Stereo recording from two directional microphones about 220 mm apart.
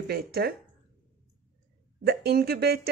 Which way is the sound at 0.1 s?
45° right (ahead or behind).